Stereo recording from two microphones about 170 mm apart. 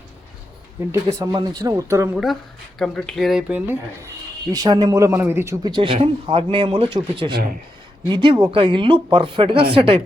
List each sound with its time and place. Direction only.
0.9 s a man's voice: 20° right (ahead or behind)
2.1 s speech: centre (ahead or behind)
4.5 s a man's voice: 25° right (ahead or behind)